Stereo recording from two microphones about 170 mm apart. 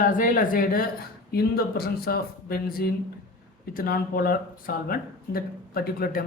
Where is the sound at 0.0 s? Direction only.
55° left (ahead or behind).